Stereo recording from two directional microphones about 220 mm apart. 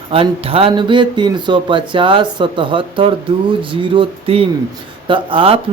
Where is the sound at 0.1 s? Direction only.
25° right (ahead or behind).